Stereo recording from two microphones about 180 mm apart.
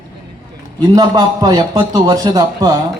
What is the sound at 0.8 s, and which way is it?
A man's voice, 20° right (ahead or behind).